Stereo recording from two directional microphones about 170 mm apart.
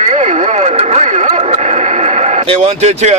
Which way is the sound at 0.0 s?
40° right (ahead or behind).